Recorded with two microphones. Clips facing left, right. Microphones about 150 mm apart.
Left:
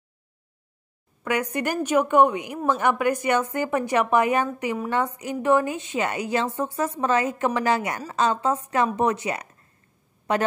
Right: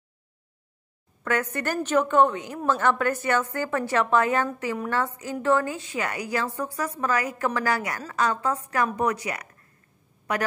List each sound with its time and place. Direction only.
1.2 s a woman's voice: 15° left (ahead or behind)